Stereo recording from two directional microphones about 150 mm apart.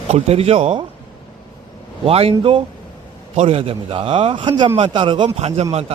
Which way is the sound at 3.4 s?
35° right (ahead or behind).